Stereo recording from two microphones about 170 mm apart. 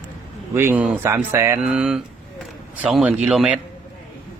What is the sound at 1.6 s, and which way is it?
Speech, 5° right (ahead or behind).